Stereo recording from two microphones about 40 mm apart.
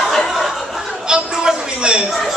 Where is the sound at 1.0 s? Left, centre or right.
Right.